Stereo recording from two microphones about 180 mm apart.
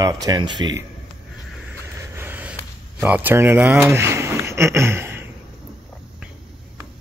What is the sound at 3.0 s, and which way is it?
Speech, 10° right (ahead or behind).